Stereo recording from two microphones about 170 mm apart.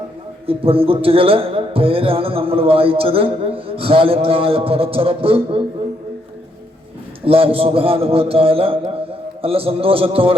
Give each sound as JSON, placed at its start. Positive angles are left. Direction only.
{"t": 0.4, "sound": "speech", "side_deg": -35}
{"t": 7.3, "sound": "speech", "side_deg": -35}